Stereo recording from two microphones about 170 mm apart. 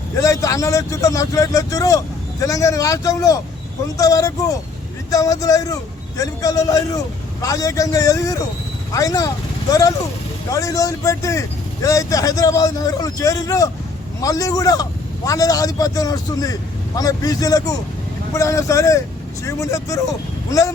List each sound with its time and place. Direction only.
0.2 s a man's voice: 20° left (ahead or behind)
10.5 s a man's voice: 20° left (ahead or behind)